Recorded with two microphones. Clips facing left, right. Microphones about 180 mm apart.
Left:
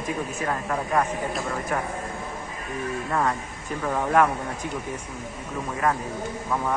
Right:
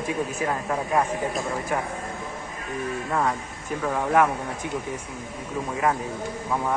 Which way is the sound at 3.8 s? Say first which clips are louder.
Even; centre (ahead or behind).